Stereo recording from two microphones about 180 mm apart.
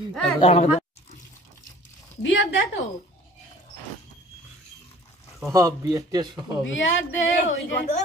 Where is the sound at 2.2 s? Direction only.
90° left.